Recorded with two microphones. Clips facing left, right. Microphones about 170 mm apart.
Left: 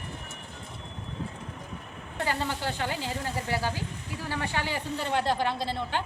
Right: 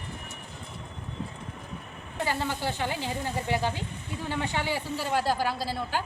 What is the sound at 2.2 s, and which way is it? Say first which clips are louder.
A woman's voice: right 1 dB; 15° right (ahead or behind).